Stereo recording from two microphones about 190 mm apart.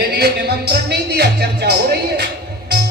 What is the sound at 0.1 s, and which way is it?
A man's voice, 60° right (ahead or behind).